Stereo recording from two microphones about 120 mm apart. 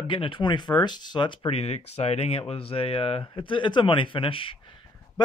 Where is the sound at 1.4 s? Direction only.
60° left (ahead or behind).